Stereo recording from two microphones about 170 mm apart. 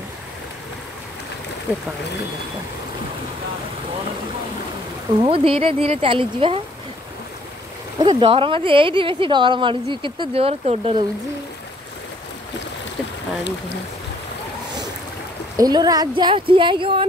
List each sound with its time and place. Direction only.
1.7 s speech: 10° right (ahead or behind)
5.2 s speech: 35° right (ahead or behind)
8.0 s speech: 30° right (ahead or behind)
15.5 s speech: 25° right (ahead or behind)